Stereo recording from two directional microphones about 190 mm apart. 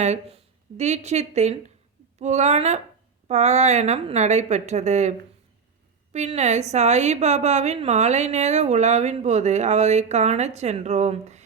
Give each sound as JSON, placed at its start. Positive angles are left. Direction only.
{"t": 0.0, "sound": "a woman's voice", "side_deg": -35}
{"t": 6.1, "sound": "a woman's voice", "side_deg": -35}